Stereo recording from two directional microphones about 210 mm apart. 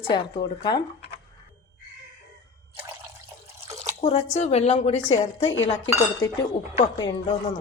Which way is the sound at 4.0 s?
30° left (ahead or behind).